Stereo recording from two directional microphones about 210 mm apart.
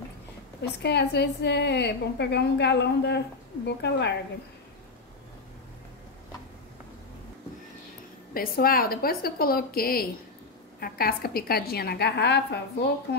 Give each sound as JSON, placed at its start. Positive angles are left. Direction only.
{"t": 0.6, "sound": "a woman's voice", "side_deg": 55}
{"t": 8.3, "sound": "a woman's voice", "side_deg": 45}